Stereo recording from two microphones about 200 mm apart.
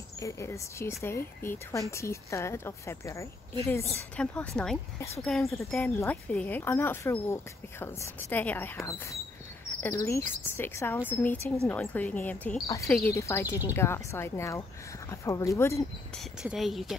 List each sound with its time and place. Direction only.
0.2 s speech: 15° left (ahead or behind)
9.8 s speech: 15° left (ahead or behind)
16.4 s speech: centre (ahead or behind)